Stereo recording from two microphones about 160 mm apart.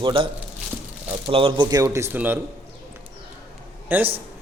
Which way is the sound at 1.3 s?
35° right (ahead or behind).